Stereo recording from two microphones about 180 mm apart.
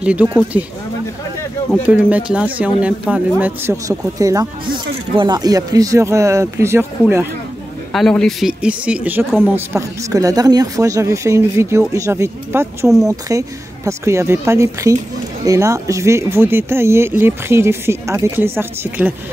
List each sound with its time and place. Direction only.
0.0 s speech: 5° right (ahead or behind)
1.9 s speech: 5° right (ahead or behind)
7.9 s speech: centre (ahead or behind); by 12.6 s 15° right (ahead or behind)
12.8 s speech: centre (ahead or behind)
13.1 s speech: 20° right (ahead or behind)